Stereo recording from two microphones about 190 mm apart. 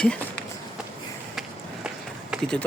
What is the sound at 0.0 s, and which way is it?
Run, 5° left (ahead or behind).